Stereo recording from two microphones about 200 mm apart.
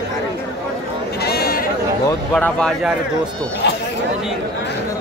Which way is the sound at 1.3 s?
50° left (ahead or behind).